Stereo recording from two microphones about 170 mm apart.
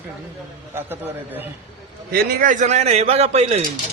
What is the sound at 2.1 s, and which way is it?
A man's voice, 65° right (ahead or behind).